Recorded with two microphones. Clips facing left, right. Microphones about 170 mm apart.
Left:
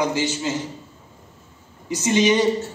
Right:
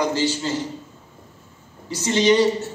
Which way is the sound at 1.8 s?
15° left (ahead or behind).